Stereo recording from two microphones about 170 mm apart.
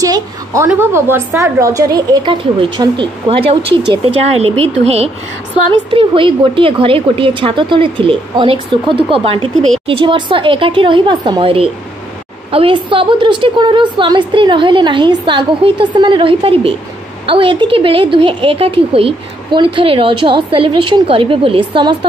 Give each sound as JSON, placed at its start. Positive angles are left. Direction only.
{"t": 0.0, "sound": "a woman's voice", "side_deg": -20}